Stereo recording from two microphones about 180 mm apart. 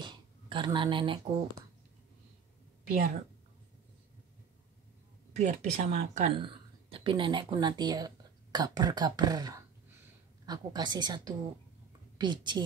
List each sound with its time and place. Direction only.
0.0 s speech: 25° right (ahead or behind)
5.3 s a woman's voice: 40° right (ahead or behind)
6.2 s a woman's voice: 30° right (ahead or behind)